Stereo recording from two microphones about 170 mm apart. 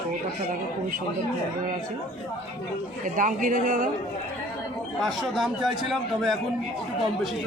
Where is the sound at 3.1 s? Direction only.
50° right (ahead or behind).